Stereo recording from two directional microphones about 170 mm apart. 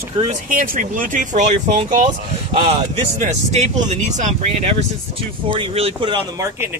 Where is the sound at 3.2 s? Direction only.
40° right (ahead or behind).